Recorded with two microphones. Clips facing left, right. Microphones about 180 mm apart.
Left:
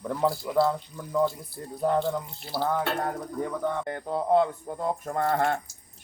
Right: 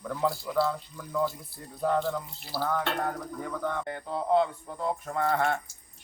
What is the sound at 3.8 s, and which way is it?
Speech, 50° left (ahead or behind).